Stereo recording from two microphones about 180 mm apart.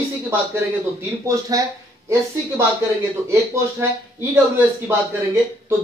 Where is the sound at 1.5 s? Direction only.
20° right (ahead or behind).